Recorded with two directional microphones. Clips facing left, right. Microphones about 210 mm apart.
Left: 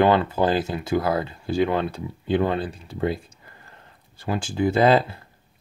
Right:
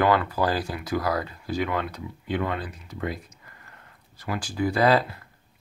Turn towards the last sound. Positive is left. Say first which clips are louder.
# left 3 dB
turn(degrees=25)  # may be behind; listen again after turning